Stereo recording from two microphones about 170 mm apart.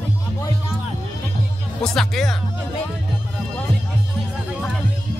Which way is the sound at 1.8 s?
5° left (ahead or behind).